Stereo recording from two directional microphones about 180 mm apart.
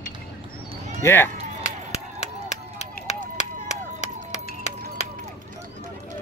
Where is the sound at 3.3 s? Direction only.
40° left (ahead or behind).